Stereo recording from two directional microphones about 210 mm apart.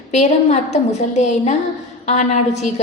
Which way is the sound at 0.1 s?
30° left (ahead or behind).